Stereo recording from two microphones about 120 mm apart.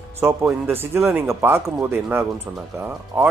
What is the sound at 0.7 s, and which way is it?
Speech, 20° right (ahead or behind).